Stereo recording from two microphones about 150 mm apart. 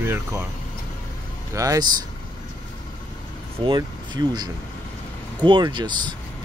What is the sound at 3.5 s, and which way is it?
Speech, 35° right (ahead or behind).